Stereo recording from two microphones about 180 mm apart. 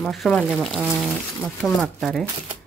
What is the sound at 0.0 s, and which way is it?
Speech, centre (ahead or behind).